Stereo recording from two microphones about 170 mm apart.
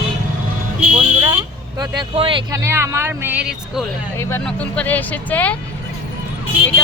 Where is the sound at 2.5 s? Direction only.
15° right (ahead or behind).